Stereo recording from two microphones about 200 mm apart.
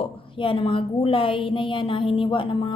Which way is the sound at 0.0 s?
25° left (ahead or behind).